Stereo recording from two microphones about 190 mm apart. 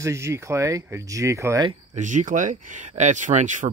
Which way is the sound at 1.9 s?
40° right (ahead or behind).